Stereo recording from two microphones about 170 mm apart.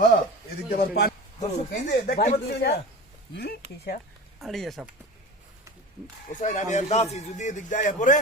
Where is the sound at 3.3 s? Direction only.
65° left (ahead or behind).